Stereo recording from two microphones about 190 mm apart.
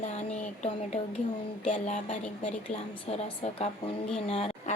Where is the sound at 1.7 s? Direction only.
40° left (ahead or behind).